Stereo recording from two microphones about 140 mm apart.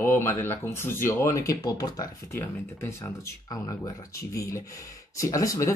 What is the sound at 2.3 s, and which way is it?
Speech, 15° left (ahead or behind).